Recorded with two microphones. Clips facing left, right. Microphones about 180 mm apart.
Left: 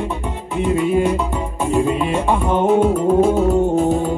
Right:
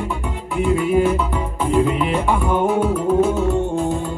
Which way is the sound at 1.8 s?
25° left (ahead or behind).